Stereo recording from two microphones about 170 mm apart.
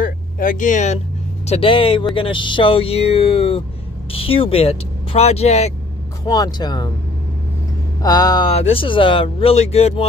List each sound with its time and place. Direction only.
0.0 s a sound: 55° left (ahead or behind)
1.4 s speech: 35° left (ahead or behind)
6.2 s speech: 20° left (ahead or behind)
8.0 s speech: 20° left (ahead or behind)
8.5 s speech: 35° left (ahead or behind)